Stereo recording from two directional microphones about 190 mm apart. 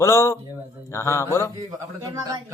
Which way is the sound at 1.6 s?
20° right (ahead or behind).